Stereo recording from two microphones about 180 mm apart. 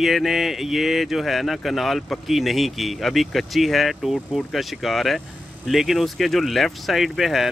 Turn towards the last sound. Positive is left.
turn(degrees=0)  # may be behind; listen again after turning